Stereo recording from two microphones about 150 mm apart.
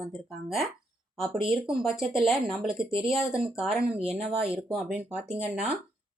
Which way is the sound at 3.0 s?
5° right (ahead or behind).